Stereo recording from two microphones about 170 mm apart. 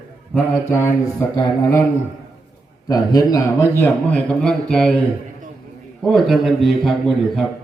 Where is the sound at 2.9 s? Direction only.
20° left (ahead or behind); by 5.0 s 5° left (ahead or behind).